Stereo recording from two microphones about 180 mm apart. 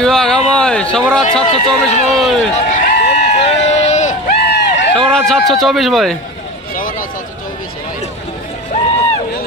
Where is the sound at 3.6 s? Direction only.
40° left (ahead or behind).